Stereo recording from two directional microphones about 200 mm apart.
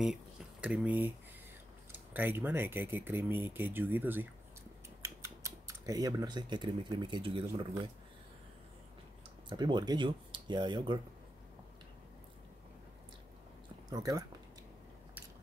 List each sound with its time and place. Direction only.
0.0 s speech: 5° right (ahead or behind); by 7.4 s 25° right (ahead or behind)
7.4 s speech: 15° right (ahead or behind)
9.5 s speech: 20° right (ahead or behind)
13.8 s speech: 20° right (ahead or behind)